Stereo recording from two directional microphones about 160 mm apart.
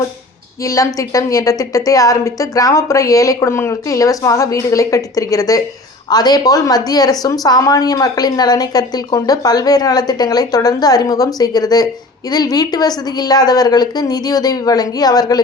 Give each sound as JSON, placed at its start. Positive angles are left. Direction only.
{"t": 0.6, "sound": "a woman's voice", "side_deg": 20}